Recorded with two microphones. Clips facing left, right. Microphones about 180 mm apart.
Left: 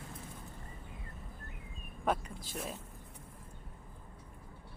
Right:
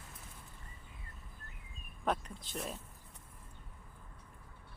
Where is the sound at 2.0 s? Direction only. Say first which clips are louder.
Left 2 dB; 5° left (ahead or behind).